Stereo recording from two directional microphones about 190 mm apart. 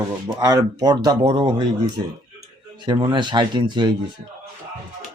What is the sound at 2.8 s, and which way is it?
Speech, 25° right (ahead or behind).